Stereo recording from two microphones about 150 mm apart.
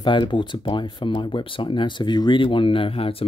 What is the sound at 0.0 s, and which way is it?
Speech, 30° left (ahead or behind).